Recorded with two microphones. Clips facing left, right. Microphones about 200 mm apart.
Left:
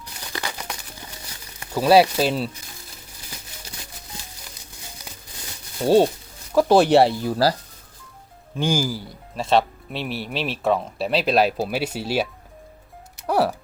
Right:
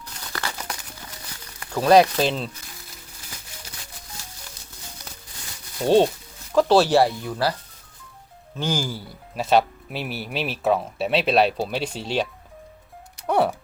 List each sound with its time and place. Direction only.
0.0 s crumpling: 15° left (ahead or behind)
1.7 s speech: 5° left (ahead or behind)
5.8 s speech: 10° left (ahead or behind); by 7.5 s 35° left (ahead or behind)
8.5 s speech: 15° left (ahead or behind)
8.9 s speech: centre (ahead or behind)
13.1 s music: centre (ahead or behind)